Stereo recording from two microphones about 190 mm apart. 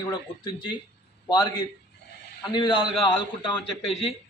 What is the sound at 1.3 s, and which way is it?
A man's voice, 20° left (ahead or behind).